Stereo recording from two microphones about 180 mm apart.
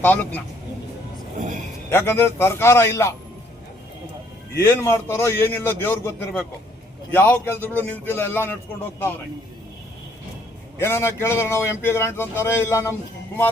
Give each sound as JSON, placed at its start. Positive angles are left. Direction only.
{"t": 0.0, "sound": "a man's voice", "side_deg": 10}
{"t": 1.4, "sound": "a sound", "side_deg": -45}
{"t": 1.9, "sound": "a man's voice", "side_deg": 15}
{"t": 4.6, "sound": "a man's voice", "side_deg": 15}
{"t": 10.8, "sound": "a man's voice", "side_deg": 15}